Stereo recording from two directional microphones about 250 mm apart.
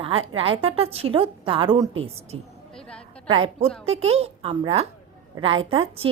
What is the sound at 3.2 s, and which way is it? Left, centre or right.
A woman's voice, right.